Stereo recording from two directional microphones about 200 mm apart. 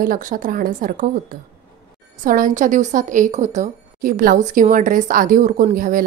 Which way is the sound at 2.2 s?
45° right (ahead or behind).